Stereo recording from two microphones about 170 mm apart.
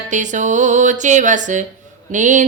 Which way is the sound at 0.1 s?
45° right (ahead or behind).